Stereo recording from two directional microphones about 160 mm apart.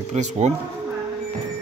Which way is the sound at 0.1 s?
45° right (ahead or behind).